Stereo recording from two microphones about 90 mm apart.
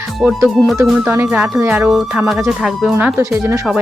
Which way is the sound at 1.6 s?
20° right (ahead or behind).